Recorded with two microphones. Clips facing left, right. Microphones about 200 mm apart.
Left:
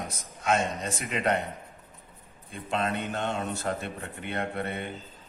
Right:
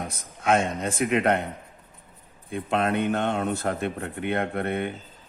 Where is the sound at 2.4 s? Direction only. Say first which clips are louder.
Right 5 dB; 60° right (ahead or behind).